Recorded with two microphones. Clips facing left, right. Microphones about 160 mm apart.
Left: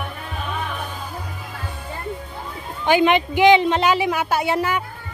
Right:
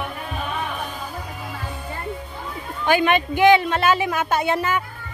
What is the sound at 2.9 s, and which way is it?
A woman's voice, 20° left (ahead or behind).